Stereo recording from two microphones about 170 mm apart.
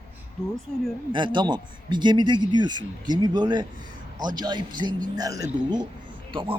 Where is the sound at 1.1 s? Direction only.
25° right (ahead or behind).